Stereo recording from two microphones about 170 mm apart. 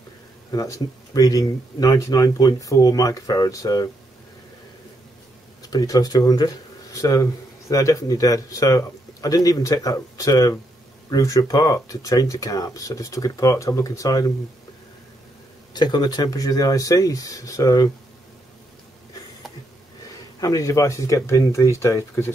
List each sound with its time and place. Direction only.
0.5 s speech: 20° left (ahead or behind)
5.6 s speech: 20° left (ahead or behind)
15.7 s speech: 25° left (ahead or behind)
20.3 s speech: 20° left (ahead or behind)